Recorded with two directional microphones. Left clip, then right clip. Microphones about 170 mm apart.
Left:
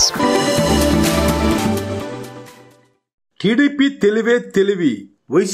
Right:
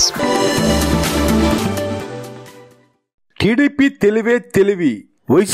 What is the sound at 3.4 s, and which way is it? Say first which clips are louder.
A man's voice: right 1 dB; 40° right (ahead or behind).